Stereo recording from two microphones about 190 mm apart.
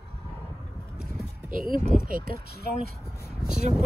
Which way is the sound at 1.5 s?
50° right (ahead or behind).